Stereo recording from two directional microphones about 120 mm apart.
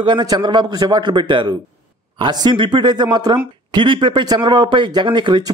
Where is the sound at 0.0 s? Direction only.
40° right (ahead or behind).